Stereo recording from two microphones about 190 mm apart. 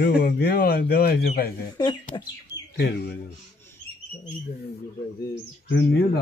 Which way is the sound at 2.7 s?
60° left (ahead or behind).